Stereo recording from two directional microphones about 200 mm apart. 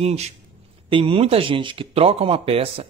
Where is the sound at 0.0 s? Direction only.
30° right (ahead or behind).